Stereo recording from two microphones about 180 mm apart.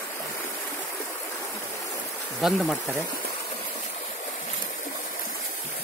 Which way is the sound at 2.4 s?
Centre (ahead or behind).